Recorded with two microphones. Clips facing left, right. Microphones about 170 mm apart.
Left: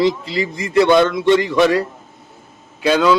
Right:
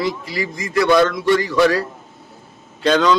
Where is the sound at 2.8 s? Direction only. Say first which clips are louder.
Left 1 dB; 5° left (ahead or behind).